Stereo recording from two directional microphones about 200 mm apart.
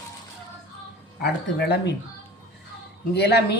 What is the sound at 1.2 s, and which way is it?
Speech, 55° left (ahead or behind).